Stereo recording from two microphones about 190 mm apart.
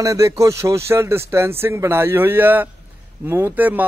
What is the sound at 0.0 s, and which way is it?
A man's voice, 15° right (ahead or behind).